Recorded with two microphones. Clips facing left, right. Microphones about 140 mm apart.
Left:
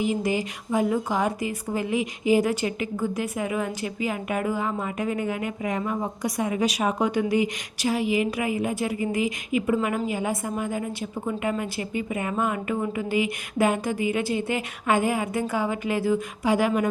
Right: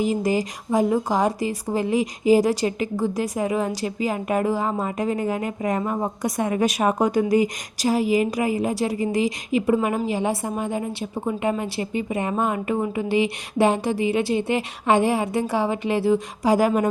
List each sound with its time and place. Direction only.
0.0 s a woman's voice: 40° right (ahead or behind)
16.4 s a woman's voice: 40° right (ahead or behind)